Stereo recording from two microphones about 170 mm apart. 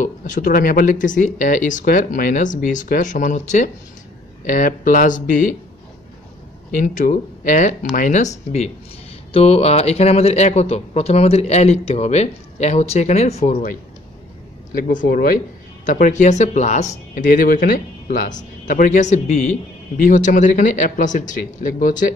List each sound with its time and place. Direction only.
0.0 s speech: 50° left (ahead or behind)
6.8 s speech: 50° left (ahead or behind)
15.8 s speech: 50° left (ahead or behind)